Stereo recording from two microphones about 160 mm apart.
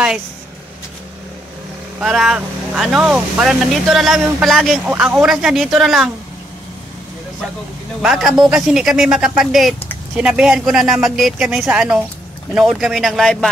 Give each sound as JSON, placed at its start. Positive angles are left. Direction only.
{"t": 2.0, "sound": "speech", "side_deg": -5}
{"t": 8.0, "sound": "a woman's voice", "side_deg": -5}